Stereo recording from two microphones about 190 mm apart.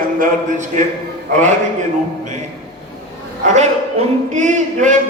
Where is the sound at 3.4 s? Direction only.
35° right (ahead or behind).